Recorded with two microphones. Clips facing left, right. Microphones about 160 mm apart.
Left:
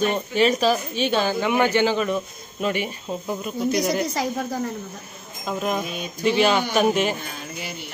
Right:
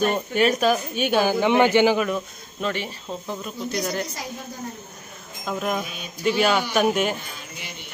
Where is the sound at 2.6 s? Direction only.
10° left (ahead or behind).